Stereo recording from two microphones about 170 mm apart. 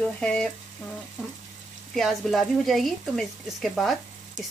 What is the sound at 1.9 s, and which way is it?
Speech, centre (ahead or behind).